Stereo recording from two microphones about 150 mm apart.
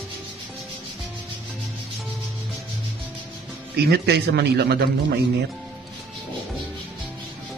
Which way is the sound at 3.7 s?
90° right.